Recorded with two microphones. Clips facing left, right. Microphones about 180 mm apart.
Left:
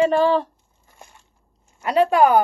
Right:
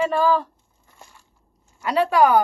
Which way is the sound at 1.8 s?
25° left (ahead or behind).